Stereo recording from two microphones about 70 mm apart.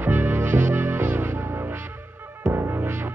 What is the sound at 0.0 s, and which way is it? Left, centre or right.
Music, right.